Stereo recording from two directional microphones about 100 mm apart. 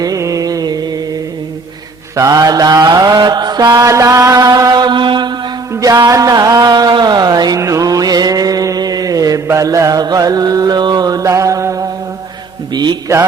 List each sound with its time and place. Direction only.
0.0 s music: 35° right (ahead or behind)
2.1 s mantra: 35° right (ahead or behind)
5.7 s music: 35° right (ahead or behind)
12.7 s mantra: 45° right (ahead or behind)